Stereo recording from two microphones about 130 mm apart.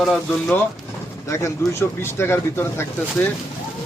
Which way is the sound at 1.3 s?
25° left (ahead or behind).